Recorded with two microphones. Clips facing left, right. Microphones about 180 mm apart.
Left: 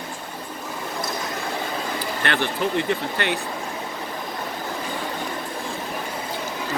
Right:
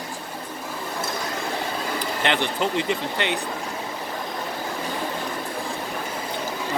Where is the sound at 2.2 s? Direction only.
20° right (ahead or behind).